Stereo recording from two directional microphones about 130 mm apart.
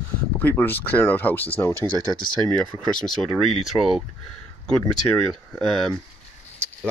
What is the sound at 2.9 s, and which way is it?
Speech, 5° left (ahead or behind).